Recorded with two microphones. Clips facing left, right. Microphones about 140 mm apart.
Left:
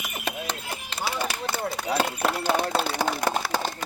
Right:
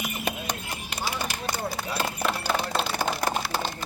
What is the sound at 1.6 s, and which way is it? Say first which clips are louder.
Speech: left 7 dB; 60° left (ahead or behind).